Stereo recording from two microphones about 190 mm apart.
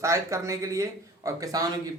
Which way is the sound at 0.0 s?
15° right (ahead or behind).